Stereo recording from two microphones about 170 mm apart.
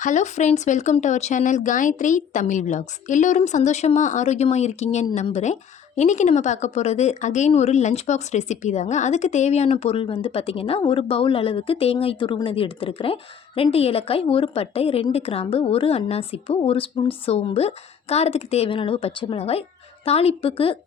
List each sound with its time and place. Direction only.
0.0 s a woman's voice: 45° left (ahead or behind)